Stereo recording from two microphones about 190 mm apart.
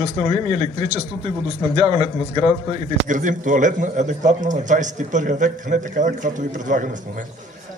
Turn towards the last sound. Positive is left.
turn(degrees=-45)  # may be behind; listen again after turning